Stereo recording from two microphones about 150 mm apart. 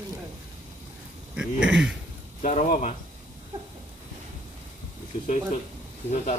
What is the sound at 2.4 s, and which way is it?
Speech, 50° left (ahead or behind).